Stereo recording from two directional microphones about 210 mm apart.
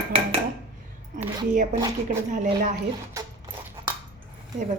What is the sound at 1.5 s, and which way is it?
Speech, 35° right (ahead or behind).